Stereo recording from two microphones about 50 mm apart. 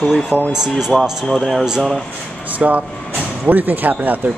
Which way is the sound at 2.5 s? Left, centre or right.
Right.